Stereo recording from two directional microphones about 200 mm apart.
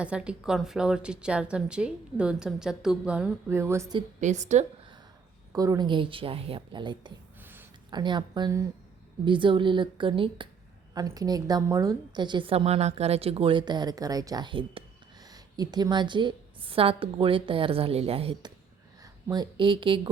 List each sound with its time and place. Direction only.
0.0 s speech: 5° right (ahead or behind)
4.2 s a woman's voice: 35° right (ahead or behind)
5.5 s a woman's voice: 15° right (ahead or behind)
7.4 s a sound: 10° right (ahead or behind)
7.9 s a woman's voice: 20° right (ahead or behind)